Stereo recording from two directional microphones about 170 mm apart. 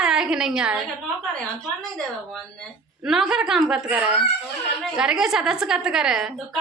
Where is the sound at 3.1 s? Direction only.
5° right (ahead or behind).